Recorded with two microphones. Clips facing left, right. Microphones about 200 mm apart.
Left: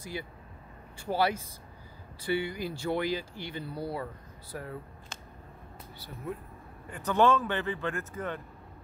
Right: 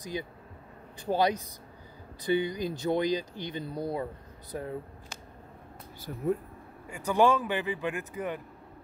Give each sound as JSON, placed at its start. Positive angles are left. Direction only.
{"t": 0.0, "sound": "speech", "side_deg": -20}
{"t": 5.9, "sound": "speech", "side_deg": -45}
{"t": 6.9, "sound": "speech", "side_deg": -10}